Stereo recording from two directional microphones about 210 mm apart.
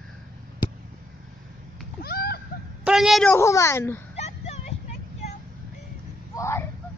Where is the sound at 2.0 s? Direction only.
50° left (ahead or behind).